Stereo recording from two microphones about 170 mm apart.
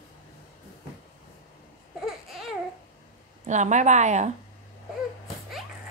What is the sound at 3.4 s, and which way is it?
Speech, 45° right (ahead or behind).